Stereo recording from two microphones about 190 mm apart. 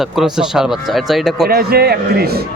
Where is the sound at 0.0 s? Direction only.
Centre (ahead or behind).